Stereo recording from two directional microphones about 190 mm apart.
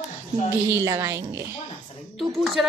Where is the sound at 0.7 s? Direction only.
15° right (ahead or behind).